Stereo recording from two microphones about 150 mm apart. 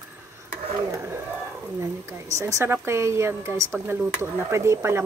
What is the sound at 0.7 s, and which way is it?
Speech, 20° right (ahead or behind).